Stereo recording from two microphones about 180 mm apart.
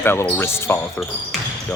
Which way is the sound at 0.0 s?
10° left (ahead or behind).